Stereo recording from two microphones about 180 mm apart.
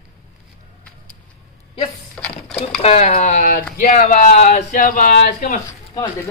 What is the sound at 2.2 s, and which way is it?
Sewing machine, 5° left (ahead or behind).